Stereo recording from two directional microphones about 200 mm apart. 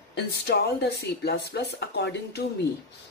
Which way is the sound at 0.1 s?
55° left (ahead or behind).